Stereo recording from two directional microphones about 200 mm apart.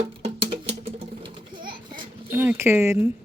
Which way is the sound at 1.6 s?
25° right (ahead or behind).